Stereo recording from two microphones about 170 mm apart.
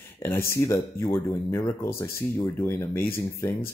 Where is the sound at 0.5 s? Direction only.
15° left (ahead or behind).